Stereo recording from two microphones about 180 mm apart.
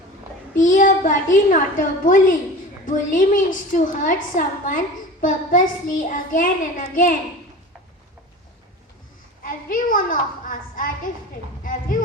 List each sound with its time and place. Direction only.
0.5 s a woman's voice: 45° left (ahead or behind)
2.8 s child singing: 45° left (ahead or behind)
9.4 s a woman's voice: 50° left (ahead or behind)
11.6 s a sound: 50° left (ahead or behind)